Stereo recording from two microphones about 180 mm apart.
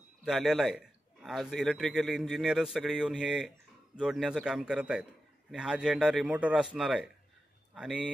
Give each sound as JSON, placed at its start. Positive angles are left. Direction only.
{"t": 0.2, "sound": "a man's voice", "side_deg": 0}